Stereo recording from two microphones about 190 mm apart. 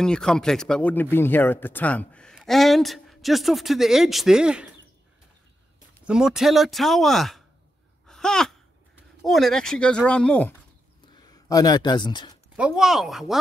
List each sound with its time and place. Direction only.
0.0 s speech: 5° left (ahead or behind)
6.0 s speech: 5° right (ahead or behind)
8.1 s sigh: 5° left (ahead or behind)
8.9 s speech: centre (ahead or behind)
11.4 s speech: 20° left (ahead or behind)
12.5 s speech: 5° right (ahead or behind)